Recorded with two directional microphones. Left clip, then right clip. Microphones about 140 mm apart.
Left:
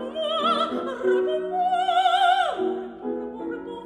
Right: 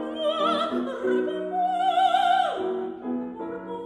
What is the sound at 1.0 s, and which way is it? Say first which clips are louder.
Music: left 5 dB; 30° left (ahead or behind).